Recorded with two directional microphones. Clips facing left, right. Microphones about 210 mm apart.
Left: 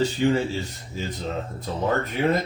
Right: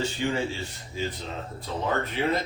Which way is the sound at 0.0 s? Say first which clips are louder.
Left 6 dB; 35° left (ahead or behind).